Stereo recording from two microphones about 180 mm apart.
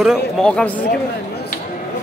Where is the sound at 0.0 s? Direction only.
Centre (ahead or behind).